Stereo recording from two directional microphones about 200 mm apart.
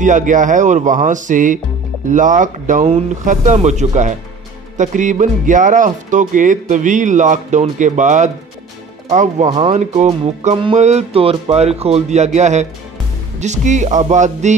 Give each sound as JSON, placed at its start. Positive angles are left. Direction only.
{"t": 0.0, "sound": "speech", "side_deg": -40}